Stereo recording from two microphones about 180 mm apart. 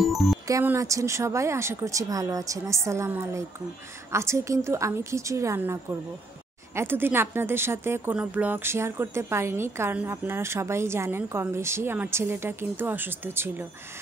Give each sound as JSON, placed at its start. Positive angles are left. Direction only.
{"t": 0.0, "sound": "music", "side_deg": 0}
{"t": 0.5, "sound": "speech", "side_deg": -15}